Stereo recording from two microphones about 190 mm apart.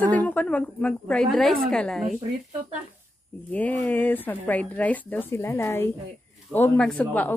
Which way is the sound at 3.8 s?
10° left (ahead or behind).